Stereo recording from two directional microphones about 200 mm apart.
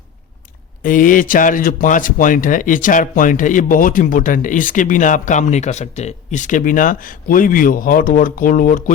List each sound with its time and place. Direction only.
0.8 s a man's voice: 40° left (ahead or behind)